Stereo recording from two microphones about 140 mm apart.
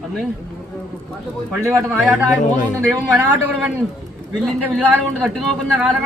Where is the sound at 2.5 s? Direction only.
60° left (ahead or behind).